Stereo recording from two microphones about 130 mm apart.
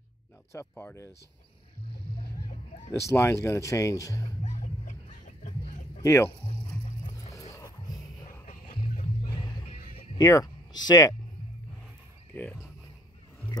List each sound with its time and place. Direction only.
0.5 s speech: 20° left (ahead or behind)
2.9 s speech: 20° left (ahead or behind)
4.4 s music: 75° left (ahead or behind)
5.9 s speech: 25° left (ahead or behind)
8.5 s music: 70° left (ahead or behind)
9.2 s music: 35° left (ahead or behind)
10.1 s speech: 30° left (ahead or behind)